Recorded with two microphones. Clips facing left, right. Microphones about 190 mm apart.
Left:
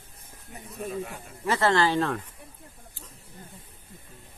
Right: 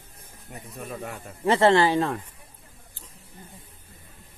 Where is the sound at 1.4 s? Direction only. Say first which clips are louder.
Right 5 dB; 30° right (ahead or behind).